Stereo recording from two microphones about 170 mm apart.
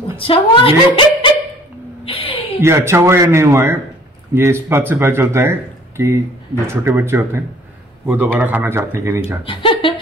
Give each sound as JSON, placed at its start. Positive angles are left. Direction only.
{"t": 0.1, "sound": "a woman's voice", "side_deg": 30}
{"t": 2.1, "sound": "a sound", "side_deg": 30}
{"t": 2.6, "sound": "speech", "side_deg": -15}
{"t": 9.4, "sound": "speech", "side_deg": 30}